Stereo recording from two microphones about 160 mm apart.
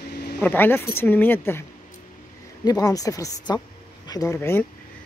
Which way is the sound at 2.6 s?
25° left (ahead or behind).